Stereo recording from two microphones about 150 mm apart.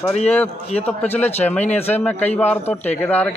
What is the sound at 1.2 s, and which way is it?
Speech, 45° left (ahead or behind).